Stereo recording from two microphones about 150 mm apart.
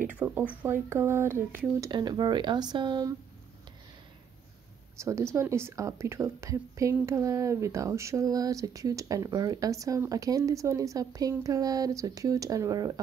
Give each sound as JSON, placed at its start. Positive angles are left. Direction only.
{"t": 0.1, "sound": "speech", "side_deg": -10}
{"t": 1.8, "sound": "speech", "side_deg": -30}
{"t": 4.9, "sound": "speech", "side_deg": -20}